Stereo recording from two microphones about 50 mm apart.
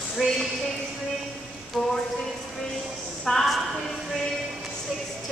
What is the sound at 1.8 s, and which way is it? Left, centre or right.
Speech, centre.